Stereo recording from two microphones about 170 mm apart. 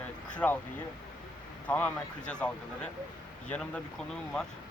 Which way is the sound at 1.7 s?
10° left (ahead or behind).